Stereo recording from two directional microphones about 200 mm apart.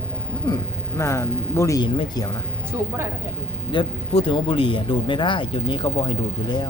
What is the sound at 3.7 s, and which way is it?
Speech, 25° left (ahead or behind).